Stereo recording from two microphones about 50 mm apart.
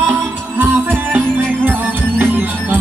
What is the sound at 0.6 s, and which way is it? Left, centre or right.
Music, right.